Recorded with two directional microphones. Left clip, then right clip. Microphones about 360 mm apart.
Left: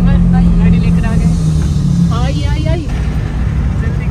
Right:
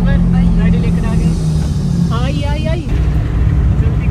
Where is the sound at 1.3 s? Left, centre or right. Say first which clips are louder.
Left 2 dB; left.